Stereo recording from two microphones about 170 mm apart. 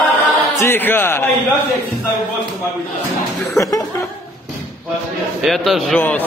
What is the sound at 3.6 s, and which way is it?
Laughter, 20° left (ahead or behind).